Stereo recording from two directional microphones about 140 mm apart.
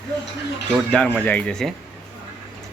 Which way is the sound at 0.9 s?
10° left (ahead or behind).